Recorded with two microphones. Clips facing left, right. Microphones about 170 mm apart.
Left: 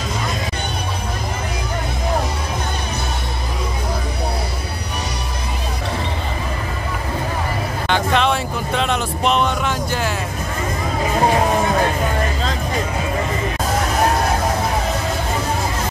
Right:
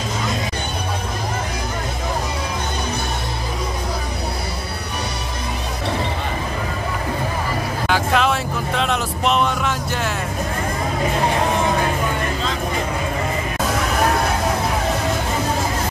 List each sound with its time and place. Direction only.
7.9 s vehicle: 5° right (ahead or behind)